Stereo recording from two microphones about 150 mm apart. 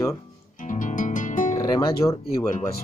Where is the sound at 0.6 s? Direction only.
60° left (ahead or behind).